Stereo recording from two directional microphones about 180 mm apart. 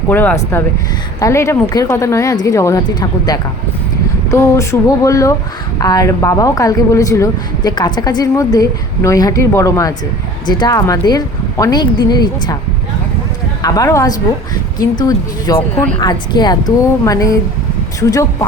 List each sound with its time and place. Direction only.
0.1 s a woman's voice: 10° left (ahead or behind)
13.6 s a woman's voice: 20° left (ahead or behind)